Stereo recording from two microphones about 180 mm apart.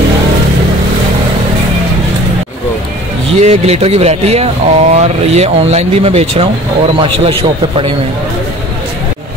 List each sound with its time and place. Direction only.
3.3 s a man's voice: 35° right (ahead or behind)